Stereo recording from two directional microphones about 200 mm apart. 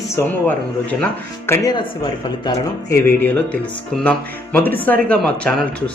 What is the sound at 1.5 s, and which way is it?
Speech, 20° left (ahead or behind).